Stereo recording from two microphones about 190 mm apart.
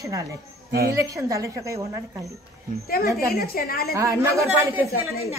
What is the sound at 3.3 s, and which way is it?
Speech, 55° left (ahead or behind).